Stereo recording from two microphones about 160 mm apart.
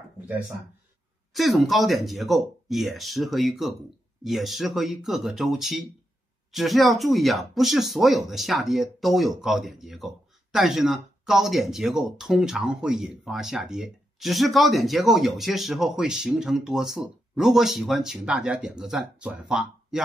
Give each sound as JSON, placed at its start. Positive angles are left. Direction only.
{"t": 1.3, "sound": "speech", "side_deg": 0}